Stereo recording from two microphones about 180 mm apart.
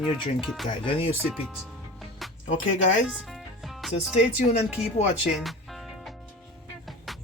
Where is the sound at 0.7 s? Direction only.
30° left (ahead or behind).